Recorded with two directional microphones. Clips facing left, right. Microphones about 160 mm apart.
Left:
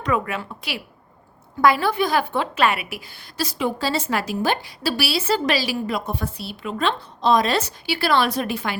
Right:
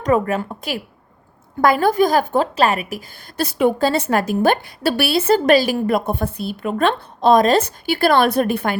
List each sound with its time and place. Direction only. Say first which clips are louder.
0.0 s a woman's voice: right 6 dB; 45° right (ahead or behind)
3.4 s a woman's voice: right 7 dB; 55° right (ahead or behind)